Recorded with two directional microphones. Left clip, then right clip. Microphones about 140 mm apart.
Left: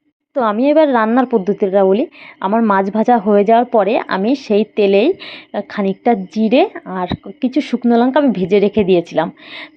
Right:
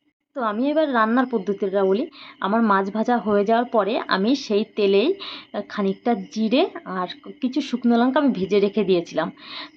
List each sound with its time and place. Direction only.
0.3 s speech: 45° left (ahead or behind); by 2.7 s 25° left (ahead or behind)
2.7 s speech: 40° left (ahead or behind)